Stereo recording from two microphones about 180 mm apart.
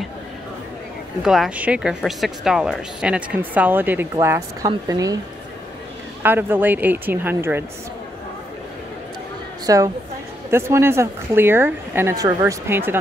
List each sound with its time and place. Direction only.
1.2 s speech: centre (ahead or behind); by 5.2 s 20° right (ahead or behind)
6.2 s speech: 10° right (ahead or behind)
9.7 s a woman's voice: 20° right (ahead or behind)